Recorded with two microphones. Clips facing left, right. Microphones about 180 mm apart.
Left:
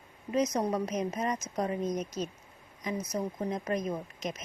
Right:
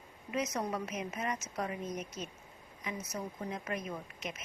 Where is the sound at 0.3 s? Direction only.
35° left (ahead or behind).